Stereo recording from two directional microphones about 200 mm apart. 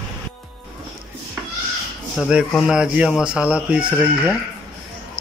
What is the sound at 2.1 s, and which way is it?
Speech, 5° right (ahead or behind).